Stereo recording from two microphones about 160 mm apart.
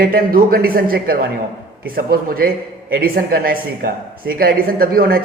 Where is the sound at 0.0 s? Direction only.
65° right (ahead or behind).